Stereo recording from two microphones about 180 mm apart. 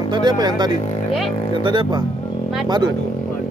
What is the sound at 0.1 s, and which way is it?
Speech, 25° right (ahead or behind).